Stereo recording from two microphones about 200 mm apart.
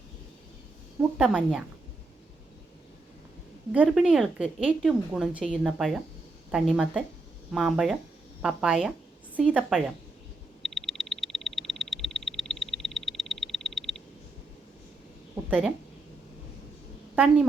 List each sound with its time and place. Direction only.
1.2 s speech: 5° right (ahead or behind)
3.7 s speech: 5° right (ahead or behind)
10.6 s frog: centre (ahead or behind)
15.4 s a woman's voice: 10° right (ahead or behind)